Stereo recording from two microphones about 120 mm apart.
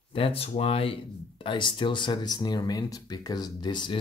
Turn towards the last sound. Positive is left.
turn(degrees=40)  # may be behind; listen again after turning